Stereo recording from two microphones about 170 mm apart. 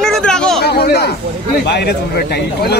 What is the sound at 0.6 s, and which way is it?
Speech, 70° left (ahead or behind).